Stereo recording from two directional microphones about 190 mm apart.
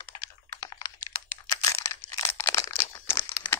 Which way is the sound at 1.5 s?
20° left (ahead or behind).